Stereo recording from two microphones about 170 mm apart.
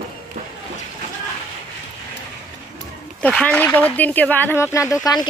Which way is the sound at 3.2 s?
5° left (ahead or behind).